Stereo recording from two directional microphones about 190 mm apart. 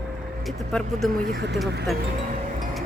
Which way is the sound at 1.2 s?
65° right (ahead or behind).